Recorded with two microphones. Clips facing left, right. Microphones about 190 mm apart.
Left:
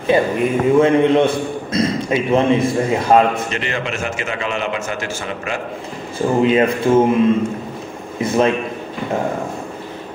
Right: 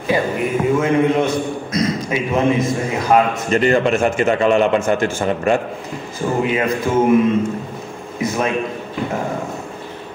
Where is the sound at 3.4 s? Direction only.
45° right (ahead or behind).